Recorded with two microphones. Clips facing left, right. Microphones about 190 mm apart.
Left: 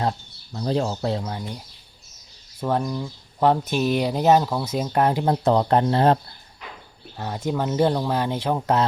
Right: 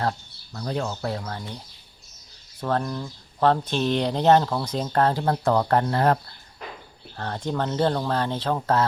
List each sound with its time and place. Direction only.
0.0 s speech: 25° left (ahead or behind)
1.2 s speech: 15° left (ahead or behind)
7.2 s speech: 10° left (ahead or behind)